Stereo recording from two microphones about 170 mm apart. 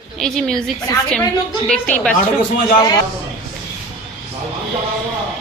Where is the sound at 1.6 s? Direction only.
5° left (ahead or behind).